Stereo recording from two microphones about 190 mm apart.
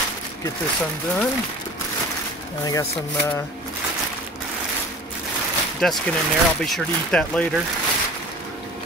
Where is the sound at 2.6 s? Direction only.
20° left (ahead or behind).